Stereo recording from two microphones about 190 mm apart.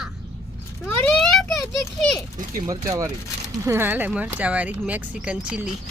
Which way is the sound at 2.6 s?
15° right (ahead or behind).